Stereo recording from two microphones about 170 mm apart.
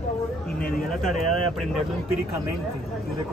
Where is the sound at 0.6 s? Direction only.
60° left (ahead or behind).